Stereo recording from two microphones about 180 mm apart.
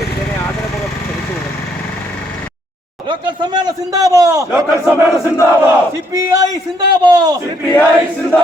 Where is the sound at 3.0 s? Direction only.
25° right (ahead or behind).